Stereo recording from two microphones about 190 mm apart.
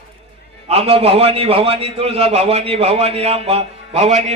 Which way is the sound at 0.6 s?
30° right (ahead or behind).